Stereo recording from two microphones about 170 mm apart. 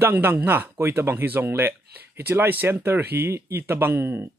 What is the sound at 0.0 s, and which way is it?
Speech, 10° right (ahead or behind).